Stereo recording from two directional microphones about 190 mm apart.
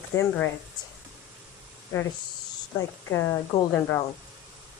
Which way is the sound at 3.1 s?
15° left (ahead or behind).